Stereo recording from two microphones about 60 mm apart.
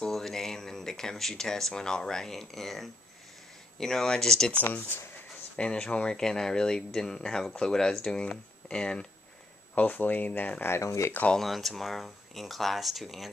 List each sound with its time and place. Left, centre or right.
0.0 s speech: centre
5.6 s speech: centre
9.8 s speech: left
10.7 s speech: left
11.3 s speech: centre